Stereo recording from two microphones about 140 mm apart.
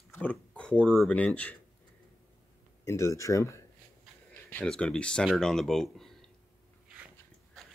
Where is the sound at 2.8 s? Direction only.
20° left (ahead or behind).